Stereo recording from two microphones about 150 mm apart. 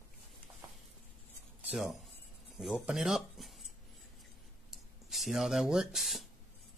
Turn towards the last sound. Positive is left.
turn(degrees=0)  # may be behind; listen again after turning